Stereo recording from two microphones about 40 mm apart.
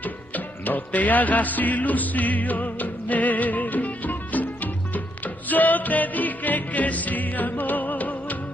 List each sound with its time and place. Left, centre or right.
0.0 s music: left